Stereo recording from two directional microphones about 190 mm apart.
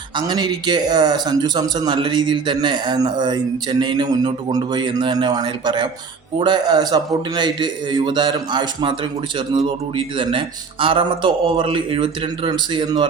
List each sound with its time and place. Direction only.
0.2 s speech: 20° right (ahead or behind)